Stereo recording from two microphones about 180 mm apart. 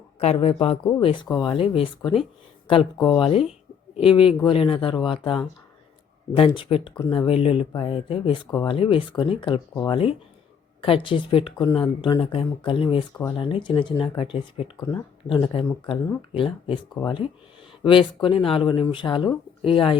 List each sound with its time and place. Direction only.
0.2 s speech: 35° left (ahead or behind)
14.8 s speech: 20° left (ahead or behind)